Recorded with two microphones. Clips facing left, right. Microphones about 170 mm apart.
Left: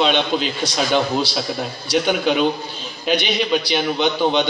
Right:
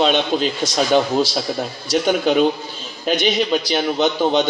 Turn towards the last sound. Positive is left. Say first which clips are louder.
# right 1 dB
turn(degrees=-45)  # may be behind; listen again after turning